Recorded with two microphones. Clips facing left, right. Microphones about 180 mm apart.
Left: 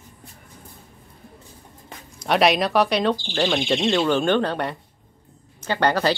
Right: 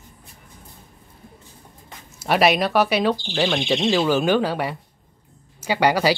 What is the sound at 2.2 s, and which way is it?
Speech, 5° right (ahead or behind).